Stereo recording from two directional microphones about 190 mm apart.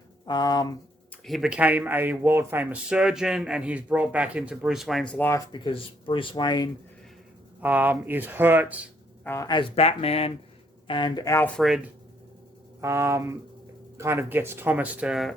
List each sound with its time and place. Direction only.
0.3 s speech: 20° left (ahead or behind)
1.2 s speech: centre (ahead or behind)
5.5 s speech: 25° left (ahead or behind)
7.6 s speech: 10° right (ahead or behind)
9.2 s speech: 15° left (ahead or behind)
12.8 s speech: 15° right (ahead or behind)